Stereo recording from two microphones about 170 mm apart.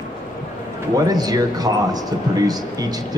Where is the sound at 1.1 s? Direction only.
20° right (ahead or behind).